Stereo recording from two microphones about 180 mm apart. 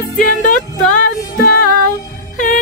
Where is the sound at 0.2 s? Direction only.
45° left (ahead or behind).